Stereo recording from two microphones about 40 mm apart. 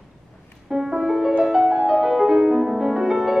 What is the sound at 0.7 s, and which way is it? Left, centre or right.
Music, centre.